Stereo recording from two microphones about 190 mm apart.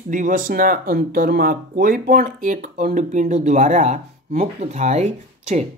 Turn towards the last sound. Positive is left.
turn(degrees=-35)  # may be behind; listen again after turning